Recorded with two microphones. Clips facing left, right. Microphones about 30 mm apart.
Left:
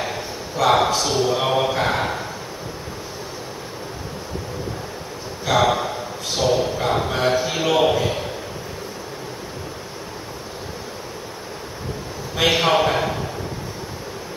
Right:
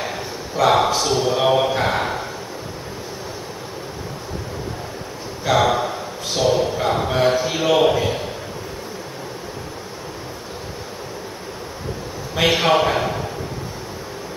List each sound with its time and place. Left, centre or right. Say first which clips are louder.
0.0 s a man's voice: even; centre
5.4 s a sound: right 1 dB; centre
6.3 s a man's voice: right 2 dB; centre
12.4 s a man's voice: right 1 dB; centre